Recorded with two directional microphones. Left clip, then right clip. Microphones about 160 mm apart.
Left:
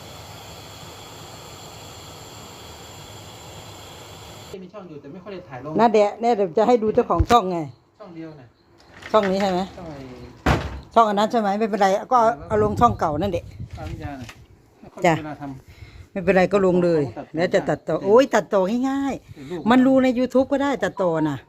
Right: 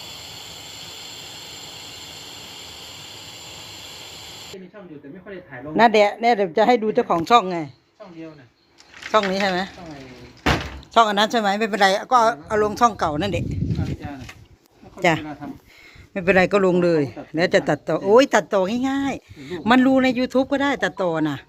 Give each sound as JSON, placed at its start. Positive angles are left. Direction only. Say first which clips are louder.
{"t": 5.7, "sound": "speech", "louder": "right 2 dB", "side_deg": -20}
{"t": 7.3, "sound": "speech", "louder": "right 1 dB", "side_deg": 0}
{"t": 9.1, "sound": "speech", "louder": "even", "side_deg": 10}
{"t": 10.9, "sound": "speech", "louder": "right 1 dB", "side_deg": 0}
{"t": 14.9, "sound": "speech", "louder": "even", "side_deg": 5}